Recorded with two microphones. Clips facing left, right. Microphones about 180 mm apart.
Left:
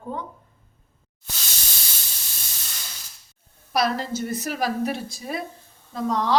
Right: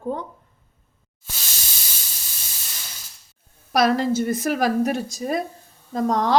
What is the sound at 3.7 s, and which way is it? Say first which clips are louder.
A woman's voice: right 5 dB; 50° right (ahead or behind).